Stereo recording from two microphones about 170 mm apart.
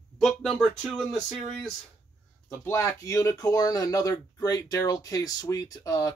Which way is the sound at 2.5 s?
15° left (ahead or behind).